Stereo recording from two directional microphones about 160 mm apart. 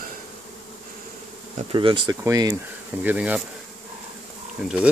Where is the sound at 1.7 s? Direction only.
30° right (ahead or behind).